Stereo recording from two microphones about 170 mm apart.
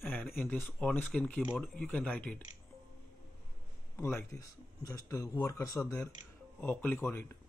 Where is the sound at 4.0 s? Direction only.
15° left (ahead or behind).